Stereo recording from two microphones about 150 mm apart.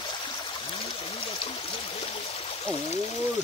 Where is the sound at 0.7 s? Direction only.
40° left (ahead or behind).